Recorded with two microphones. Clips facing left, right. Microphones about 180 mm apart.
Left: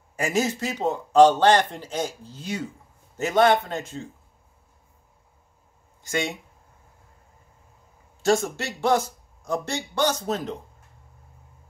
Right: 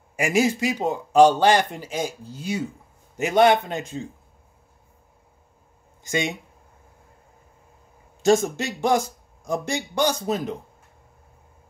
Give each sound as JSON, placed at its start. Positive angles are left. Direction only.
{"t": 0.1, "sound": "a man's voice", "side_deg": -10}
{"t": 6.0, "sound": "a man's voice", "side_deg": -15}
{"t": 8.2, "sound": "a man's voice", "side_deg": -20}